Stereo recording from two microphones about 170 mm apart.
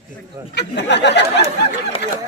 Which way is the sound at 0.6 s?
90° left.